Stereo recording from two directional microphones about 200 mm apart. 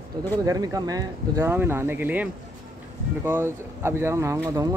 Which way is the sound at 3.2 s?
10° right (ahead or behind).